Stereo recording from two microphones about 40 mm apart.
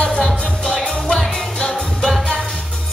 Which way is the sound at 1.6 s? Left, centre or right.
Left.